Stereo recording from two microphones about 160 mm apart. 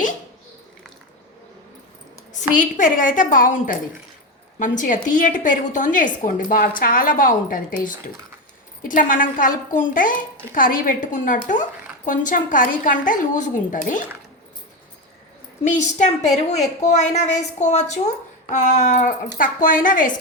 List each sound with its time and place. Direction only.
2.6 s a woman's voice: 55° left (ahead or behind)
15.6 s a woman's voice: 50° left (ahead or behind)